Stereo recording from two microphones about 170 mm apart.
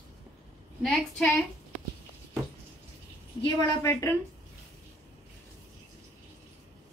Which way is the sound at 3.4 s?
15° left (ahead or behind).